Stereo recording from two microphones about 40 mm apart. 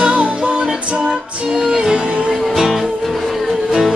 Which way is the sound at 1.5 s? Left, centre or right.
Centre.